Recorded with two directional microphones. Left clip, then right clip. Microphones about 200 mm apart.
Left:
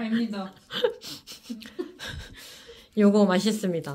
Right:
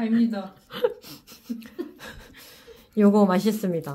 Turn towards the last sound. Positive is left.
turn(degrees=-10)  # may be behind; listen again after turning